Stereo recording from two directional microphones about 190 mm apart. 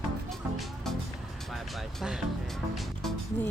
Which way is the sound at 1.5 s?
Centre (ahead or behind).